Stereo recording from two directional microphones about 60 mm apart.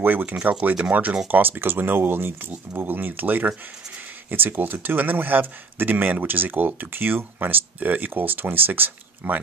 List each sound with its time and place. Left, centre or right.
0.0 s speech: right